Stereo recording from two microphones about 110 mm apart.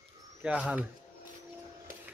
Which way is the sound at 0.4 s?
10° right (ahead or behind).